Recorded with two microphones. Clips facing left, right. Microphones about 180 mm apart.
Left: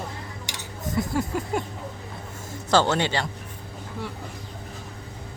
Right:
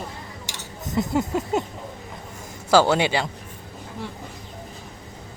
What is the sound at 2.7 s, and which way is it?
Speech, 10° right (ahead or behind).